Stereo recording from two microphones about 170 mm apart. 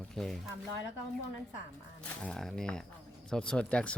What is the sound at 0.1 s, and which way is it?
Speech, centre (ahead or behind).